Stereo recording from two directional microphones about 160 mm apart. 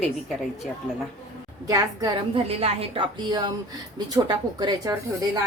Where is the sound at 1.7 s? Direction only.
20° right (ahead or behind).